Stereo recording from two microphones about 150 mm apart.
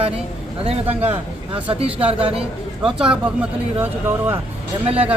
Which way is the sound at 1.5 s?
40° right (ahead or behind).